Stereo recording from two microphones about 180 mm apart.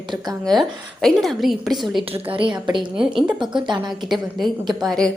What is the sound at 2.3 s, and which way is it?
Speech, 25° right (ahead or behind).